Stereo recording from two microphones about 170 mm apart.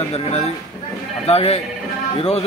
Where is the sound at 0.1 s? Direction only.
40° left (ahead or behind).